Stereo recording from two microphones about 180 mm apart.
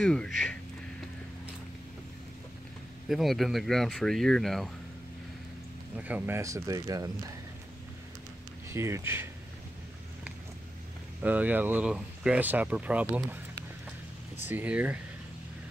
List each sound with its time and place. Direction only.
0.0 s speech: 5° left (ahead or behind)
3.1 s speech: centre (ahead or behind)
5.9 s speech: 10° right (ahead or behind)
8.6 s speech: 15° right (ahead or behind)
11.2 s speech: 10° right (ahead or behind)
14.4 s speech: 10° right (ahead or behind)